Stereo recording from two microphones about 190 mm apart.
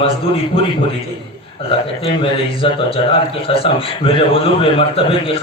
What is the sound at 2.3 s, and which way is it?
A man's voice, 30° left (ahead or behind).